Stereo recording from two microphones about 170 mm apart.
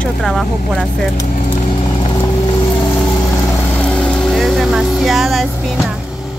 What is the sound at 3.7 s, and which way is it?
Vehicle, 5° left (ahead or behind).